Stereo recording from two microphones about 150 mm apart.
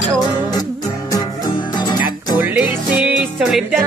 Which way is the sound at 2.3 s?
10° right (ahead or behind).